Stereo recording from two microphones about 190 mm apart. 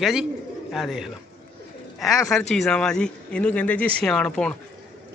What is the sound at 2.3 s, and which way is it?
A man's voice, centre (ahead or behind).